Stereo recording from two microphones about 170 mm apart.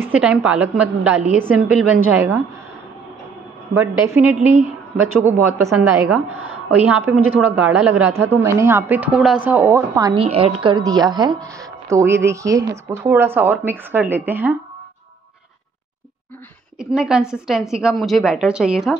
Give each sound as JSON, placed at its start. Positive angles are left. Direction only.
{"t": 0.0, "sound": "a woman's voice", "side_deg": -5}
{"t": 3.7, "sound": "a woman's voice", "side_deg": -10}
{"t": 5.8, "sound": "a woman's voice", "side_deg": -5}
{"t": 10.1, "sound": "a woman's voice", "side_deg": -35}
{"t": 16.7, "sound": "a woman's voice", "side_deg": -5}